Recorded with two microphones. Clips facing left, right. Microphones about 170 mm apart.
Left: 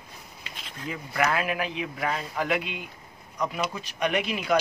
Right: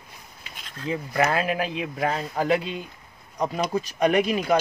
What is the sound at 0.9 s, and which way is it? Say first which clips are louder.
Speech: right 3 dB; 30° right (ahead or behind).